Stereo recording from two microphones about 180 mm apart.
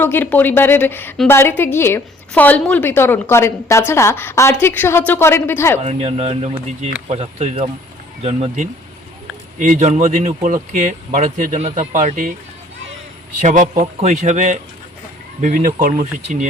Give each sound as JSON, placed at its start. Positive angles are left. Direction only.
{"t": 0.0, "sound": "a woman's voice", "side_deg": 10}
{"t": 5.8, "sound": "speech", "side_deg": -35}
{"t": 13.4, "sound": "speech", "side_deg": -45}